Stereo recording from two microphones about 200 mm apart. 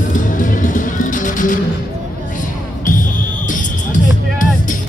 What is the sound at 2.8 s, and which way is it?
Music, 40° left (ahead or behind).